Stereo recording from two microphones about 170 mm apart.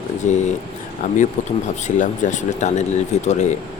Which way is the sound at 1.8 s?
45° left (ahead or behind).